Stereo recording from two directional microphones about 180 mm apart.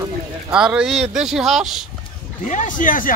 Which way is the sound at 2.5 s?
45° left (ahead or behind).